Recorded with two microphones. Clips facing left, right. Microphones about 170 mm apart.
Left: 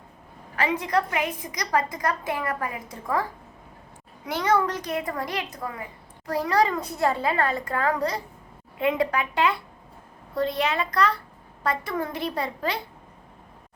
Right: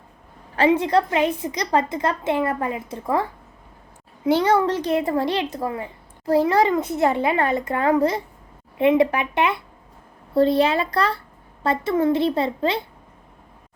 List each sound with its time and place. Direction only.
0.5 s a child's voice: 30° right (ahead or behind)
4.3 s a child's voice: 30° right (ahead or behind)